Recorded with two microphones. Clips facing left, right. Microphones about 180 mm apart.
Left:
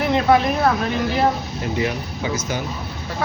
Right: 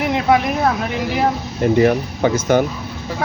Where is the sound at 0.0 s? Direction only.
15° right (ahead or behind).